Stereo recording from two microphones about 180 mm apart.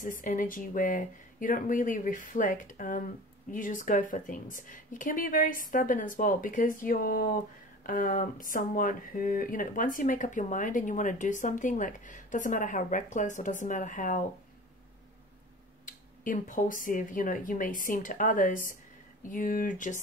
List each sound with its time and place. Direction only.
0.0 s a woman's voice: 45° left (ahead or behind)
16.3 s a woman's voice: 50° left (ahead or behind)